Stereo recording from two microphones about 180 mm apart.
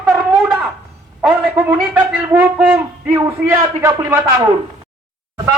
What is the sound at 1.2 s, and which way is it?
Speech, 5° right (ahead or behind).